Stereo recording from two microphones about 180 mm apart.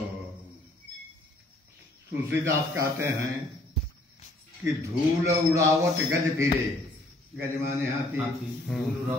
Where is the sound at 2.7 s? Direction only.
15° right (ahead or behind).